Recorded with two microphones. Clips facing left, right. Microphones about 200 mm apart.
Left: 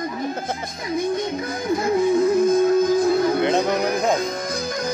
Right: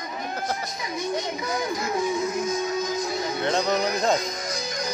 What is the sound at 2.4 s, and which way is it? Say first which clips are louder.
Music: left 10 dB; 55° left (ahead or behind).